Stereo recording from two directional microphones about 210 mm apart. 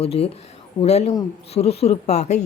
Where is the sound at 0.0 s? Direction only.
30° left (ahead or behind).